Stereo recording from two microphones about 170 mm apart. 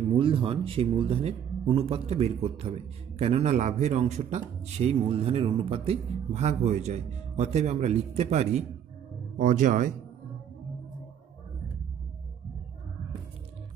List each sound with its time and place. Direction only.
0.2 s a man's voice: 30° right (ahead or behind); by 9.9 s 50° right (ahead or behind)